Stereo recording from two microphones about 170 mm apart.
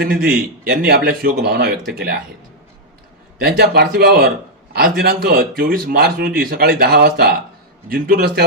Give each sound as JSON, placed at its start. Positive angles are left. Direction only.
{"t": 0.0, "sound": "speech", "side_deg": -60}
{"t": 3.6, "sound": "speech", "side_deg": -65}